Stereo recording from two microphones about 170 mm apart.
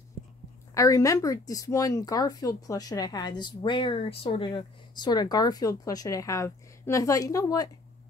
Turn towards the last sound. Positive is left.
turn(degrees=20)  # may be behind; listen again after turning